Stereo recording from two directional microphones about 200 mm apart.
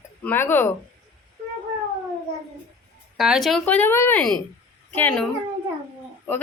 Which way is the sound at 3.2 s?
Centre (ahead or behind).